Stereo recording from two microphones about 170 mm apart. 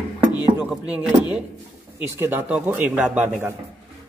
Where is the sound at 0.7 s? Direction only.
5° right (ahead or behind).